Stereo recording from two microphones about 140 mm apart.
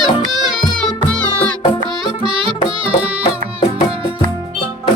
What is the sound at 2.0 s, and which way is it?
Music, 35° right (ahead or behind).